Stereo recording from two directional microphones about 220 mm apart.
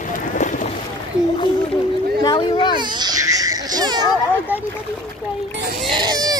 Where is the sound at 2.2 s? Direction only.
20° left (ahead or behind).